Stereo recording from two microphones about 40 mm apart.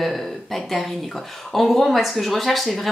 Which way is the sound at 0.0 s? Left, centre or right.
Centre.